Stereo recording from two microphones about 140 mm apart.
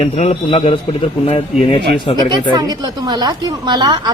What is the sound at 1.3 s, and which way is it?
Speech, 40° left (ahead or behind).